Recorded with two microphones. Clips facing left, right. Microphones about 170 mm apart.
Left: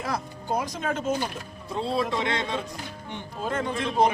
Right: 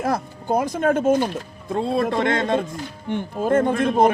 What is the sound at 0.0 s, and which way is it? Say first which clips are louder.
Speech: right 7 dB; 50° right (ahead or behind).